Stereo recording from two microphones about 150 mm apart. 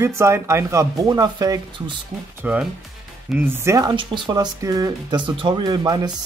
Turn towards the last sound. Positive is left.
turn(degrees=-25)  # may be behind; listen again after turning